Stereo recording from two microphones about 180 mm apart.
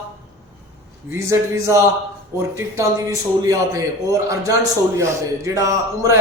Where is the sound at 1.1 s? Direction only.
15° right (ahead or behind).